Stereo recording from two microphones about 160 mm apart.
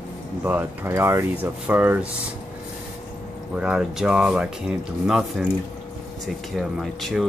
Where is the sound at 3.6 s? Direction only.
5° right (ahead or behind).